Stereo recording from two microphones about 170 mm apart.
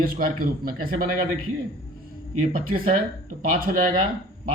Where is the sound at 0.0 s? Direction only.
55° right (ahead or behind).